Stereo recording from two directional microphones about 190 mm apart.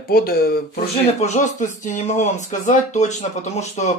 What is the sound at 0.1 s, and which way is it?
Speech, 50° left (ahead or behind).